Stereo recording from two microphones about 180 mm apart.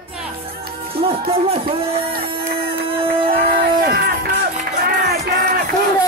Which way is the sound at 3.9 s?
65° right (ahead or behind).